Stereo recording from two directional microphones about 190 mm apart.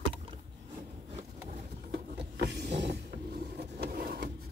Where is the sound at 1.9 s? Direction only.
65° right (ahead or behind).